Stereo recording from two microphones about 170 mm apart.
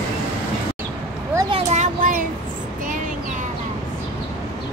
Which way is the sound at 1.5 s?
40° right (ahead or behind).